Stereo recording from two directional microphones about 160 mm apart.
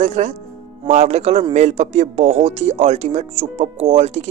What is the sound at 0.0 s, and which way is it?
Speech, 45° right (ahead or behind).